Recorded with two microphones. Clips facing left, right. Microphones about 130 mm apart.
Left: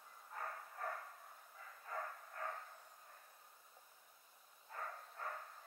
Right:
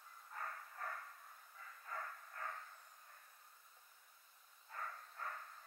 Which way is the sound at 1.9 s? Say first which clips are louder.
Left 3 dB; 20° left (ahead or behind).